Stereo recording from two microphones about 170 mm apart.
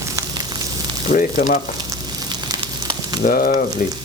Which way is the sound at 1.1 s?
50° left (ahead or behind).